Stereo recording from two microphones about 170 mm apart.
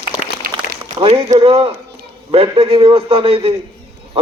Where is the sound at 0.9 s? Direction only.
35° right (ahead or behind).